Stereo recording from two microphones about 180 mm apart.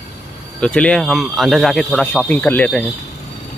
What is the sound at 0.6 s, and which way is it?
Speech, 5° left (ahead or behind).